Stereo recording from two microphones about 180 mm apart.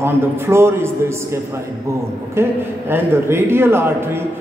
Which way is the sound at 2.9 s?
15° right (ahead or behind).